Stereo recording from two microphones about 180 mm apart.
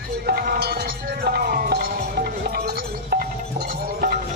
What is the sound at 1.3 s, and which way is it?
Music, 55° right (ahead or behind).